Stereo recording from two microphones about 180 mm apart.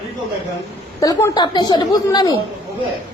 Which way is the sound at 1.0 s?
15° left (ahead or behind).